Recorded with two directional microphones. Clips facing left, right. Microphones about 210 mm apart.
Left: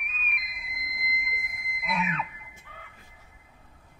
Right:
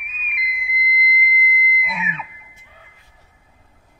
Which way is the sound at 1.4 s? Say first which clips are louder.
Right 15 dB; 50° left (ahead or behind).